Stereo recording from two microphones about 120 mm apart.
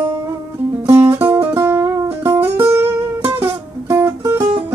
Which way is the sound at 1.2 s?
15° right (ahead or behind).